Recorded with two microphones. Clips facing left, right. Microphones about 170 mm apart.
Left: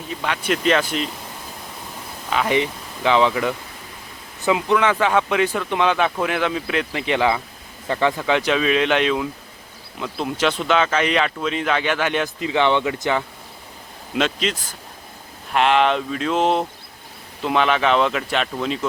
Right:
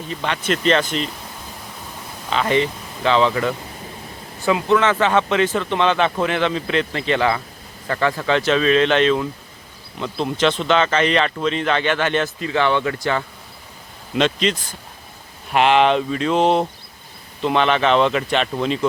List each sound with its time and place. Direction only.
0.1 s speech: 5° left (ahead or behind)
2.3 s speech: 10° left (ahead or behind)
14.1 s speech: 5° left (ahead or behind)
15.5 s speech: centre (ahead or behind)